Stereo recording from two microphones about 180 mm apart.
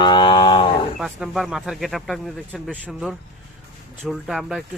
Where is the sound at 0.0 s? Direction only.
25° left (ahead or behind).